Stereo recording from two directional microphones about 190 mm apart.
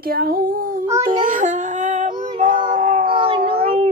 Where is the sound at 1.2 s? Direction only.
40° right (ahead or behind).